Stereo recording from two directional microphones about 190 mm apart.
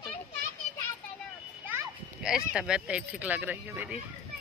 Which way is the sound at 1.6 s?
10° right (ahead or behind).